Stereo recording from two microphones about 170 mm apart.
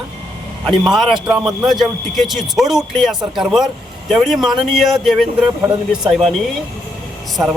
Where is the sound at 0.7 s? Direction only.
Centre (ahead or behind).